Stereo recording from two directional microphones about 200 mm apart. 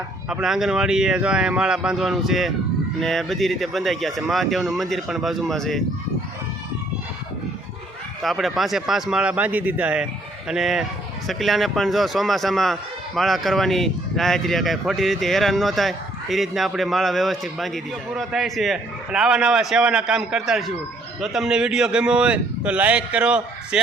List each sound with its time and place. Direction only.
0.3 s speech: 5° right (ahead or behind)
8.2 s speech: centre (ahead or behind)